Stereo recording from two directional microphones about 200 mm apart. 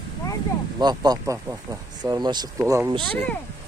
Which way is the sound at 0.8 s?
20° right (ahead or behind).